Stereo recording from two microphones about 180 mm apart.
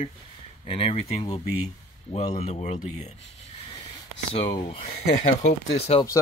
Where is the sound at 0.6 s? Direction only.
30° left (ahead or behind).